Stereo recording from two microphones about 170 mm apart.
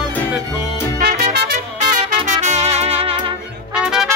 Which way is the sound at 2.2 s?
40° right (ahead or behind).